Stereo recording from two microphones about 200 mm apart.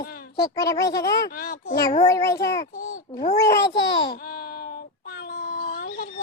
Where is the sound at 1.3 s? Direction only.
45° left (ahead or behind).